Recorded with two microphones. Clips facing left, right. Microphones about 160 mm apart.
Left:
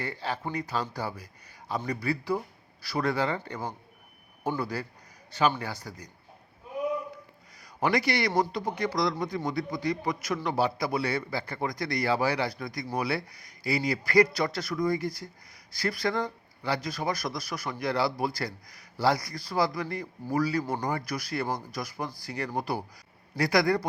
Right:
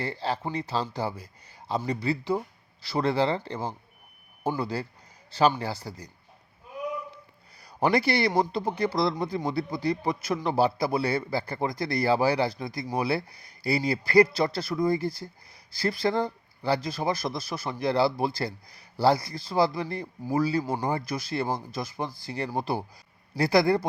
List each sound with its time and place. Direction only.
0.0 s a man's voice: 30° right (ahead or behind)
7.6 s a man's voice: 30° right (ahead or behind)